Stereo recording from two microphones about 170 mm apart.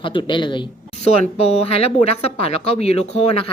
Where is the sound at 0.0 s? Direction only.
30° left (ahead or behind).